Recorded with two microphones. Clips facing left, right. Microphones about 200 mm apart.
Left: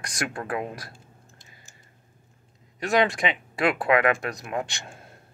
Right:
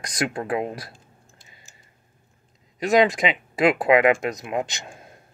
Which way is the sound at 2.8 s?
20° right (ahead or behind).